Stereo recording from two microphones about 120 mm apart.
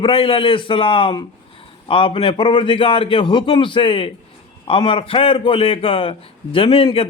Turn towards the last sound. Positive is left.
turn(degrees=50)  # may be behind; listen again after turning